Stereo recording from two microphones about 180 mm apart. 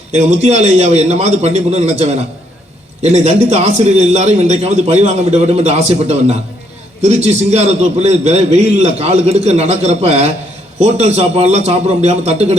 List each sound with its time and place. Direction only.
0.1 s a man's voice: 40° right (ahead or behind)